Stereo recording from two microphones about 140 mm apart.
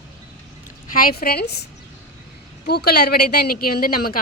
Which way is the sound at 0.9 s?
90° left.